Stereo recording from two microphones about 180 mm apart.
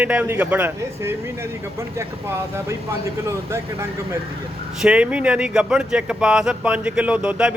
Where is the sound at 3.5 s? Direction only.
15° right (ahead or behind).